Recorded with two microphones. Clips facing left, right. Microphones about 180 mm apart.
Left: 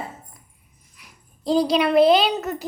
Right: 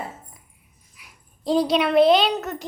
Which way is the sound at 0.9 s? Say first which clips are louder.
Left 2 dB; centre (ahead or behind).